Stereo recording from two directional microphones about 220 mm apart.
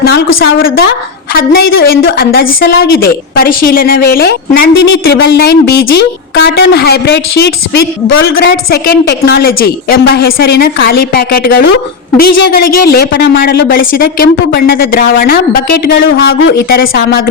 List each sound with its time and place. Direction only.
0.4 s a woman's voice: 45° left (ahead or behind)
16.0 s a woman's voice: 55° left (ahead or behind)